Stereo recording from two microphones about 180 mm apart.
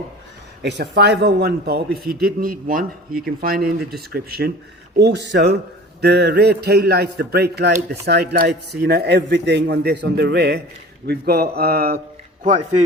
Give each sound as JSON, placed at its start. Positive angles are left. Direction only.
{"t": 0.6, "sound": "a man's voice", "side_deg": -65}
{"t": 12.4, "sound": "a man's voice", "side_deg": -45}